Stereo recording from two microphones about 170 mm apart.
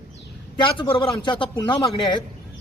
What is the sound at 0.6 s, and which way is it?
A man's voice, 30° left (ahead or behind).